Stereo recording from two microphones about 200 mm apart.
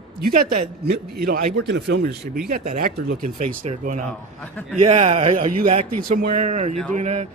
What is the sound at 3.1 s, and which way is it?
A man's voice, 5° left (ahead or behind).